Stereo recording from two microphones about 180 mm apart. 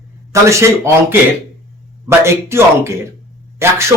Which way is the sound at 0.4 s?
15° right (ahead or behind).